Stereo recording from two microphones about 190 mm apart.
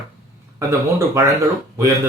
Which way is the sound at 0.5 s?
15° right (ahead or behind).